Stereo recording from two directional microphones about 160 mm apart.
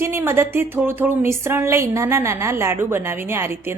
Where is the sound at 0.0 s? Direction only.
15° right (ahead or behind).